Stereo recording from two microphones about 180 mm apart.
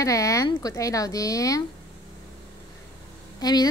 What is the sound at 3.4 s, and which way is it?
Speech, 20° left (ahead or behind).